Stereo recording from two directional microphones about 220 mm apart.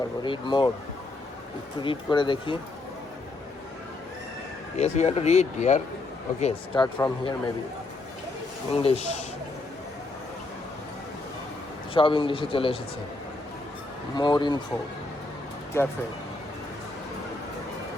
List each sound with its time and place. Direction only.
0.2 s speech: 20° left (ahead or behind)
1.8 s speech: 20° left (ahead or behind)
4.8 s speech: 30° left (ahead or behind)
6.4 s speech: 20° left (ahead or behind)
8.7 s speech: 25° left (ahead or behind)
11.9 s speech: 20° left (ahead or behind)
14.2 s speech: 20° left (ahead or behind)
15.7 s speech: 10° left (ahead or behind)